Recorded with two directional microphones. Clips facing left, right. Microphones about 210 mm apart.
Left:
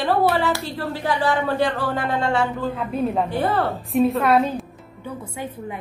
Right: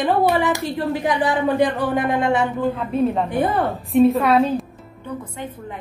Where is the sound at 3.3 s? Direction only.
15° right (ahead or behind).